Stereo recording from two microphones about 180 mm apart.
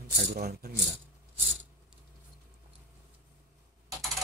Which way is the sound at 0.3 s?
60° right (ahead or behind).